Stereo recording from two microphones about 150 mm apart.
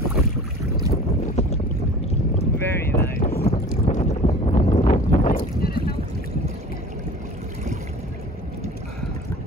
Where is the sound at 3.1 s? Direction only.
80° left.